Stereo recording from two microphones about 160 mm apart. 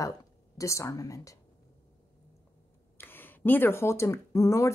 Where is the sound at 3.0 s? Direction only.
15° left (ahead or behind).